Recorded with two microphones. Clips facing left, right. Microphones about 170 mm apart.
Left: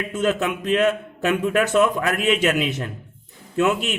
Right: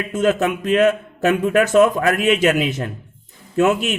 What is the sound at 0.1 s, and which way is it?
A man's voice, 45° right (ahead or behind).